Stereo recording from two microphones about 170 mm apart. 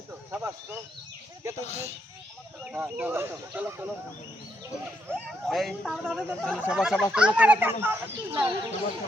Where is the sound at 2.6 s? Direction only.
10° right (ahead or behind).